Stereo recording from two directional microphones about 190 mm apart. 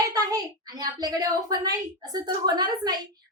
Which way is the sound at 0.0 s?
20° right (ahead or behind).